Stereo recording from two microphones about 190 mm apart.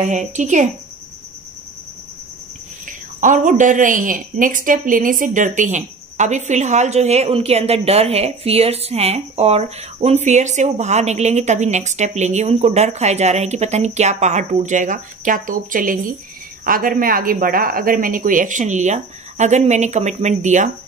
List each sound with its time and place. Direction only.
0.0 s a woman's voice: 40° right (ahead or behind)
3.2 s a woman's voice: 40° right (ahead or behind)